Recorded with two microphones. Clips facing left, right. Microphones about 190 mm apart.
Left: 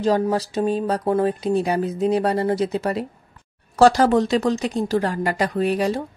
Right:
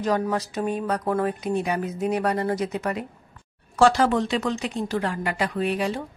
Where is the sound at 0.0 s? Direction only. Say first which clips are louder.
Left 4 dB; 30° left (ahead or behind).